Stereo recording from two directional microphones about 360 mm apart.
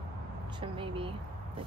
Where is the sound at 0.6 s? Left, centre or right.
Centre.